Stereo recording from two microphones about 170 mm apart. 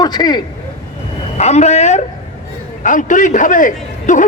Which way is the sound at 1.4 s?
40° left (ahead or behind).